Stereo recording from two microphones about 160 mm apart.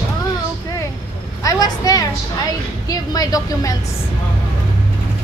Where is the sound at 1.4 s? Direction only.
20° left (ahead or behind).